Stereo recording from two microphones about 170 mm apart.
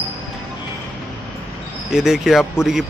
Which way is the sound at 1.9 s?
5° right (ahead or behind).